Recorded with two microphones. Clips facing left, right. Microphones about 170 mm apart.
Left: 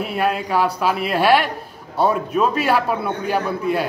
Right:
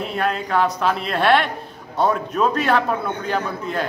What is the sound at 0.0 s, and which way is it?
A man's voice, 10° left (ahead or behind).